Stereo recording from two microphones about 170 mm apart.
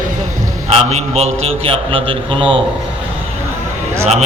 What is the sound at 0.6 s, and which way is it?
Speech, 40° right (ahead or behind).